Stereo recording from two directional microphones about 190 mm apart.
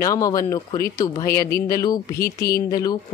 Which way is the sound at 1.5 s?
50° left (ahead or behind).